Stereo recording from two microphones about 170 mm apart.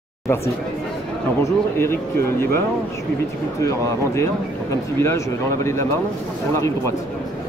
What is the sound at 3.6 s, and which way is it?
Speech, 20° left (ahead or behind).